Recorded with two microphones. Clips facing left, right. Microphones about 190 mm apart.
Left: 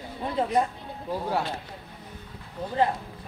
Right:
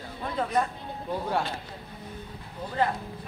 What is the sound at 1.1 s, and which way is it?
Speech, 5° left (ahead or behind).